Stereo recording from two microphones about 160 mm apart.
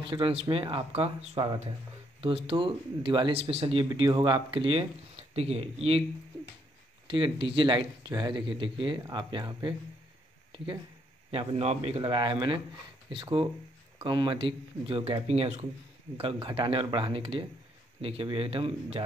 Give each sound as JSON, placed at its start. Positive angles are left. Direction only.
{"t": 0.0, "sound": "speech", "side_deg": -35}
{"t": 7.1, "sound": "speech", "side_deg": -30}
{"t": 11.3, "sound": "speech", "side_deg": -40}